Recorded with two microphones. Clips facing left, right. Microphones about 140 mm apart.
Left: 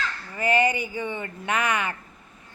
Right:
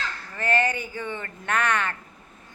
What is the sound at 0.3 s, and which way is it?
A woman's voice, 10° left (ahead or behind).